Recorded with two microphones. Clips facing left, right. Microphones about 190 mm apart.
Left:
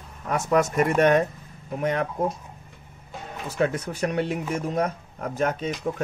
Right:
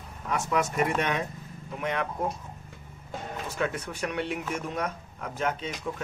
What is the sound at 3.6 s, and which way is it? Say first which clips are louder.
Speech: left 7 dB; 40° left (ahead or behind).